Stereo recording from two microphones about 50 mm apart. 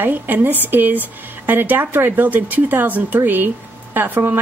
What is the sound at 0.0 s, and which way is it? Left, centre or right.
Speech, right.